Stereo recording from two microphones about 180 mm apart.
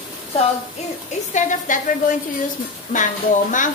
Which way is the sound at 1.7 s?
45° left (ahead or behind).